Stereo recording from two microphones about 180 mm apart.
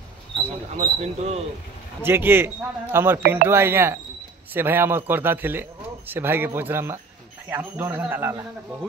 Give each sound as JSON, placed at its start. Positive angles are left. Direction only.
{"t": 0.7, "sound": "speech", "side_deg": -35}
{"t": 2.0, "sound": "a man's voice", "side_deg": -10}